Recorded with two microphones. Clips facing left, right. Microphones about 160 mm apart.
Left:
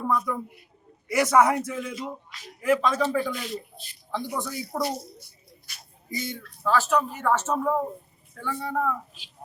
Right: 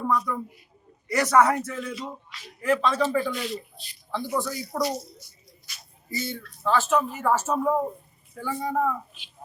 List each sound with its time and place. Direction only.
0.1 s a man's voice: 5° left (ahead or behind)
4.4 s a man's voice: 20° left (ahead or behind)
4.8 s a child's voice: 55° left (ahead or behind)
6.1 s a man's voice: 15° left (ahead or behind)
6.6 s speech: centre (ahead or behind)